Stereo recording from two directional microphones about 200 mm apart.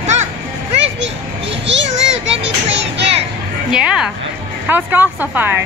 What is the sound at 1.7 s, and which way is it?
Children playing, 65° right (ahead or behind).